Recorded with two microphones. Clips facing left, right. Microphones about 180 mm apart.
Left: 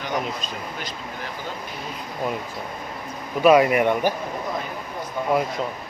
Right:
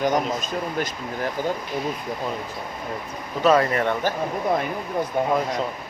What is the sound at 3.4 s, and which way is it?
Speech, 10° left (ahead or behind).